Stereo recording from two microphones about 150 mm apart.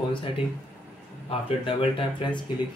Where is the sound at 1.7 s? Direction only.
35° left (ahead or behind).